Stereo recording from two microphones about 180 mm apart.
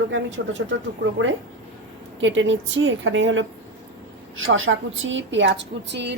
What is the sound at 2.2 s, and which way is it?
A woman's voice, 90° right.